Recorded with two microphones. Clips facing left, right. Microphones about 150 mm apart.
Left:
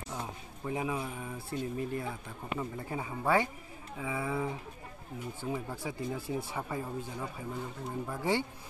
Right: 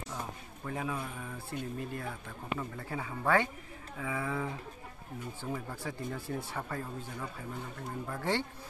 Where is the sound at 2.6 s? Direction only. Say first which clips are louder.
Left 2 dB; 15° left (ahead or behind).